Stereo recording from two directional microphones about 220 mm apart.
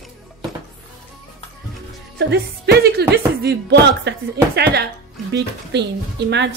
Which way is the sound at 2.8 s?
45° right (ahead or behind).